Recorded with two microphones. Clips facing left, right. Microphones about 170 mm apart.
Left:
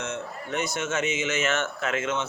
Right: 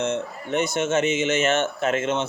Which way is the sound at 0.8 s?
30° right (ahead or behind).